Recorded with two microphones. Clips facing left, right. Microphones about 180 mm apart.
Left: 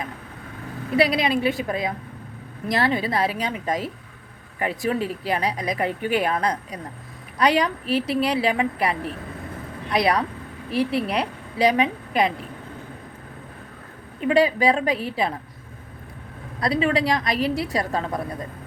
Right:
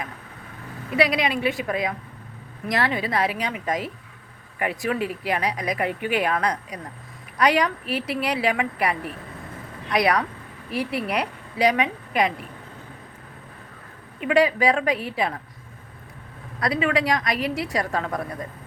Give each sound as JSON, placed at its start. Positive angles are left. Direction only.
{"t": 0.9, "sound": "a woman's voice", "side_deg": 30}
{"t": 14.2, "sound": "speech", "side_deg": 30}
{"t": 16.6, "sound": "a woman's voice", "side_deg": 30}